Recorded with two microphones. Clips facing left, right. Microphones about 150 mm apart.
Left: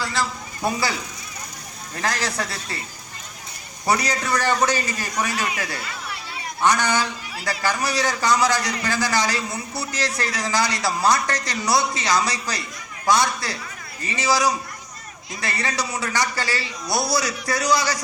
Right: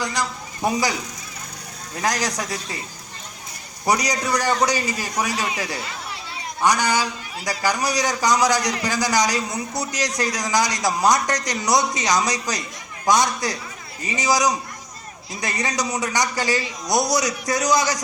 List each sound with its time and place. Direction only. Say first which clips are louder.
0.0 s a man's voice: even; 15° right (ahead or behind)
2.0 s a man's voice: right 2 dB; 15° right (ahead or behind)
3.8 s a man's voice: right 1 dB; 15° right (ahead or behind)